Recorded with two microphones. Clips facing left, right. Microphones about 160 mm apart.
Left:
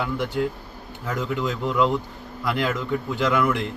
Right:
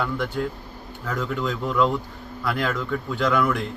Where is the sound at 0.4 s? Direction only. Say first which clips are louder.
Left 4 dB; 10° left (ahead or behind).